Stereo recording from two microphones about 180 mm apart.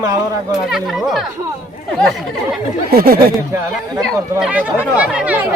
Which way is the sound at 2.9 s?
60° right (ahead or behind).